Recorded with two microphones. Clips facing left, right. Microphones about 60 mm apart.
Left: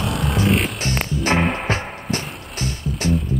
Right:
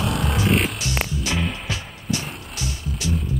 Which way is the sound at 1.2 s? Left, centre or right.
Left.